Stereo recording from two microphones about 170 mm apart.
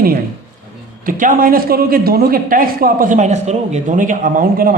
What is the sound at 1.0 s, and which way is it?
A man's voice, 55° right (ahead or behind).